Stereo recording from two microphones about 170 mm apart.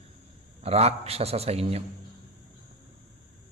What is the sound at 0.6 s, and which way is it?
A man's voice, 35° right (ahead or behind).